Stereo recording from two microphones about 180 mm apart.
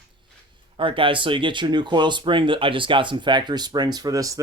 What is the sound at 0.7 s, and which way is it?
Speech, 30° right (ahead or behind).